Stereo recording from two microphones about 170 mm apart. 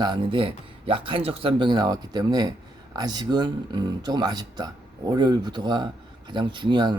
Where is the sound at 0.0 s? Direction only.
30° right (ahead or behind).